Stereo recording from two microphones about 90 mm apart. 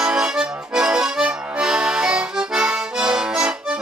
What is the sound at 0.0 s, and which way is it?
Accordion, 5° right (ahead or behind).